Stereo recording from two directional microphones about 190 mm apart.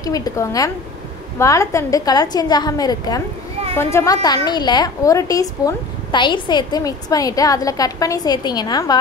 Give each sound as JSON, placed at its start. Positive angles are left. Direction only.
{"t": 0.0, "sound": "a woman's voice", "side_deg": 20}